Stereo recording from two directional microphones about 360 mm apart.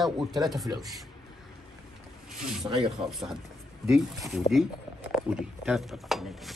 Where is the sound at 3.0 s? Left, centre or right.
Centre.